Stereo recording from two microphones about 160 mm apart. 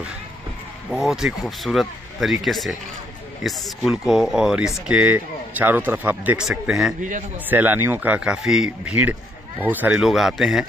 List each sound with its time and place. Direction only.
0.8 s a man's voice: centre (ahead or behind)
7.0 s a man's voice: 50° right (ahead or behind)
7.4 s a man's voice: 10° right (ahead or behind)